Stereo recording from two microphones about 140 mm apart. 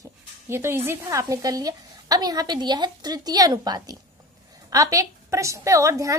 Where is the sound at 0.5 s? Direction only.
20° right (ahead or behind).